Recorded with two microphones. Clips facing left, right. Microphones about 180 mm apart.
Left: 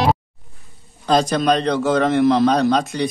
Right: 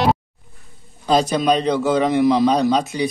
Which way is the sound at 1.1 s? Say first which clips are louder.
Even; 5° right (ahead or behind).